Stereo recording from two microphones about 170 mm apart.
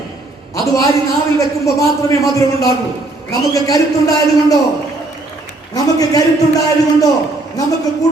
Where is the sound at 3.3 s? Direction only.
20° left (ahead or behind).